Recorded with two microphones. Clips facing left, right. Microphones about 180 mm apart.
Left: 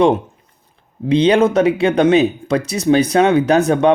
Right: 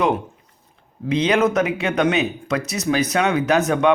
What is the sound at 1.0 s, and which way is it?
Speech, 30° left (ahead or behind).